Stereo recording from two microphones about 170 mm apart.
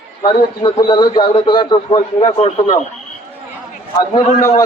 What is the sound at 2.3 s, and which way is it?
Speech, 40° left (ahead or behind).